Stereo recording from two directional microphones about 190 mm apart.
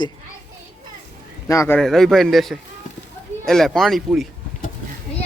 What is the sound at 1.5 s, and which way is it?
Speech, 15° left (ahead or behind).